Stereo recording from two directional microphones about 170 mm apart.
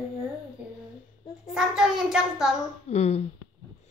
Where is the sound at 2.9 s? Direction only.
40° left (ahead or behind).